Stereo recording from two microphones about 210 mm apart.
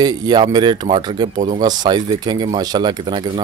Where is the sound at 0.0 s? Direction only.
20° right (ahead or behind).